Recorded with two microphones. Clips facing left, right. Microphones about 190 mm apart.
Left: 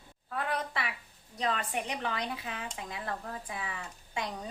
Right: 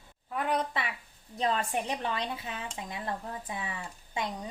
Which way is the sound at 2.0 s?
25° right (ahead or behind).